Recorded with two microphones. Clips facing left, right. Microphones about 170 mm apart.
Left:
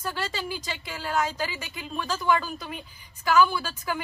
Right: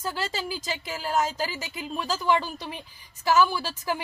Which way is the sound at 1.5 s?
35° right (ahead or behind).